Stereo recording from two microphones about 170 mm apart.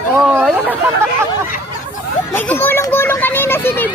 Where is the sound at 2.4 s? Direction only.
10° left (ahead or behind).